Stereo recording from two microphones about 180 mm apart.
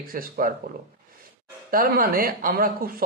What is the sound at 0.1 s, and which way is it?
Speech, 50° right (ahead or behind).